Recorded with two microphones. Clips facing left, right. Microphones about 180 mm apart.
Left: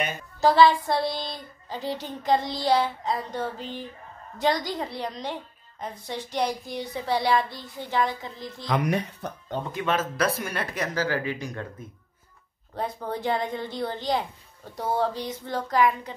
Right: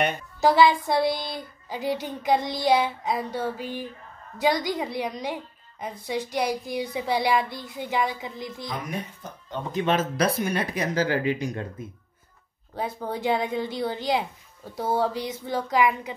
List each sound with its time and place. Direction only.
0.4 s a woman's voice: 15° right (ahead or behind)
8.6 s speech: 75° left (ahead or behind)
9.7 s speech: 20° right (ahead or behind)
12.7 s a woman's voice: 5° right (ahead or behind)